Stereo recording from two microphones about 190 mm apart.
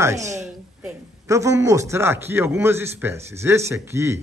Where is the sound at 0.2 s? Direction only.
40° right (ahead or behind).